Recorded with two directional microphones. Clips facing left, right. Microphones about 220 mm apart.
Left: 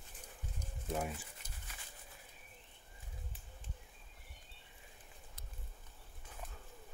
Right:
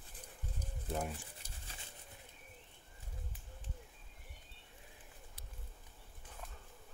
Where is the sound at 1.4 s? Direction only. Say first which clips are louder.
Right 1 dB; 30° right (ahead or behind).